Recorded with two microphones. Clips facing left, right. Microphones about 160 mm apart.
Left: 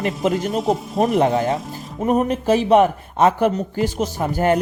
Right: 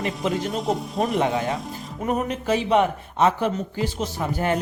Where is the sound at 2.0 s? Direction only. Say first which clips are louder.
Left 6 dB; 45° left (ahead or behind).